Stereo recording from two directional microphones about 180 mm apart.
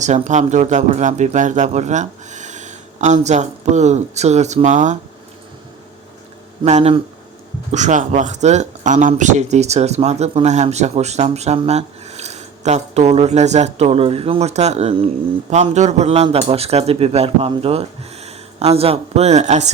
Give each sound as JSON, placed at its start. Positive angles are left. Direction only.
{"t": 0.0, "sound": "speech", "side_deg": -40}
{"t": 6.7, "sound": "speech", "side_deg": -35}